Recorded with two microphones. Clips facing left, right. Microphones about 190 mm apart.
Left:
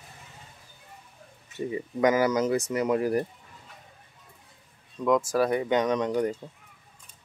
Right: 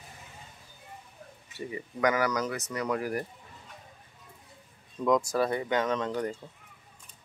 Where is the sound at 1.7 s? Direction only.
25° left (ahead or behind).